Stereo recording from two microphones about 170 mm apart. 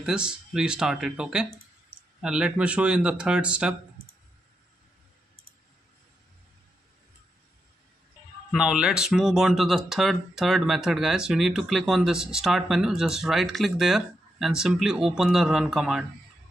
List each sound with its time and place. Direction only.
0.0 s speech: 5° right (ahead or behind)
8.5 s speech: 5° right (ahead or behind)